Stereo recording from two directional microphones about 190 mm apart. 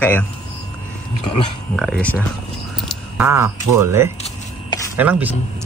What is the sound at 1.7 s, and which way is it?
Speech, 5° left (ahead or behind).